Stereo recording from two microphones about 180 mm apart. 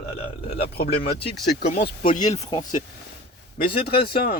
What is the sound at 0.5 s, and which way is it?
Speech, 60° left (ahead or behind).